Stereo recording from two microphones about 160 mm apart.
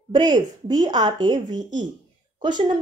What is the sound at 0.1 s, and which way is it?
Speech, 25° right (ahead or behind).